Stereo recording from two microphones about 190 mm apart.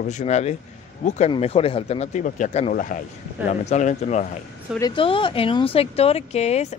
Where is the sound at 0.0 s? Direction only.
40° left (ahead or behind).